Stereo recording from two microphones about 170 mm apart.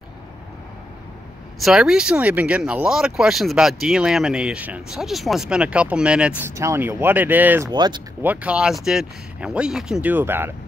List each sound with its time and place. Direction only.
1.6 s speech: centre (ahead or behind)
7.7 s speech: 25° right (ahead or behind)
8.2 s speech: 10° right (ahead or behind)